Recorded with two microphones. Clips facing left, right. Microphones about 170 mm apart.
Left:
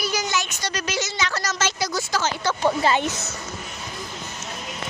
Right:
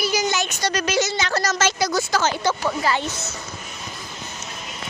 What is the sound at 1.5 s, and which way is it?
Speech, 85° right.